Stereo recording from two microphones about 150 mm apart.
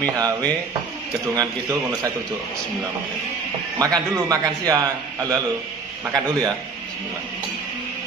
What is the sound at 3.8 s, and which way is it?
A man's voice, 25° right (ahead or behind).